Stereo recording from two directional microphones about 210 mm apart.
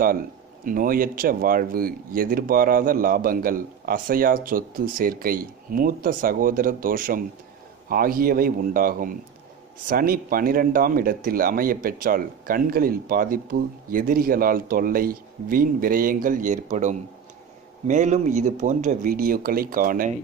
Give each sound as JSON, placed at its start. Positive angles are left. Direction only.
{"t": 0.7, "sound": "speech", "side_deg": -40}